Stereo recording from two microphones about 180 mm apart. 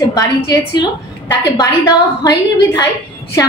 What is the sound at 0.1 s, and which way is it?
A woman's voice, 20° left (ahead or behind).